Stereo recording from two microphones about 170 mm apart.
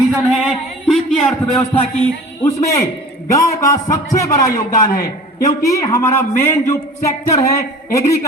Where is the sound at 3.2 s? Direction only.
20° left (ahead or behind).